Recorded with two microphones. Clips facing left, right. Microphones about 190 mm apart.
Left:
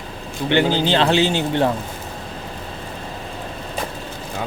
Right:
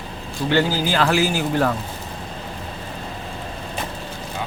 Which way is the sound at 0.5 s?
25° left (ahead or behind).